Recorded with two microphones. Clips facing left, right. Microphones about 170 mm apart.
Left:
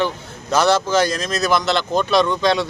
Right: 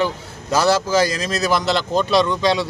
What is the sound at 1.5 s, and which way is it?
Speech, 35° right (ahead or behind).